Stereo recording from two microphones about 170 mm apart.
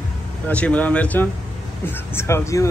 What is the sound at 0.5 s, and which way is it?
Speech, 10° left (ahead or behind).